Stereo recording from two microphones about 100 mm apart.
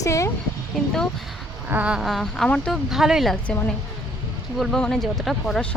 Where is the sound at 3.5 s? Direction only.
10° left (ahead or behind).